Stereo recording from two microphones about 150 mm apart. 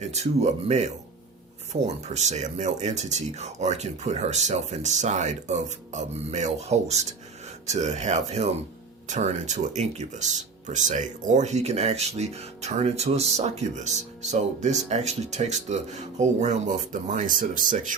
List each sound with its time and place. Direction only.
0.2 s speech: 45° right (ahead or behind)